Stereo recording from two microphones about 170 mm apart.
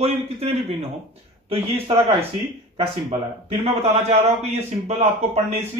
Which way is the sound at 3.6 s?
40° right (ahead or behind).